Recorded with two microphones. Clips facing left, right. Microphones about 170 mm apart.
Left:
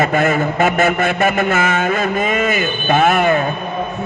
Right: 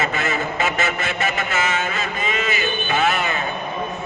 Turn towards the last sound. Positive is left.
turn(degrees=50)  # may be behind; listen again after turning